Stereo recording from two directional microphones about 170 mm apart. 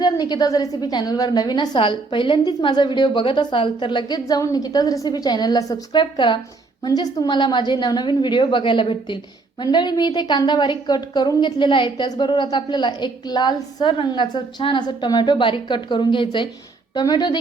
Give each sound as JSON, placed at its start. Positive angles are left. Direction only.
{"t": 0.0, "sound": "a woman's voice", "side_deg": 25}